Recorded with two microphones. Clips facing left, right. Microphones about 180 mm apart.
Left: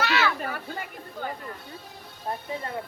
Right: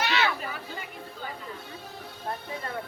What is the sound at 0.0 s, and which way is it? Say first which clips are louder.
Chatter: left 2 dB; 20° right (ahead or behind).